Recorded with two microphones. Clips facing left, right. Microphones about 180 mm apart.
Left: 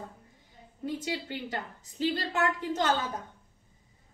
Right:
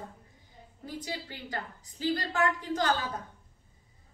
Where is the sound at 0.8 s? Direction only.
25° left (ahead or behind).